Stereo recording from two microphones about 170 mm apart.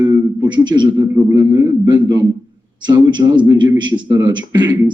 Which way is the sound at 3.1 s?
25° right (ahead or behind).